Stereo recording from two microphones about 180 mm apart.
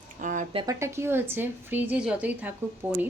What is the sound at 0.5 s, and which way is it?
Speech, 20° right (ahead or behind).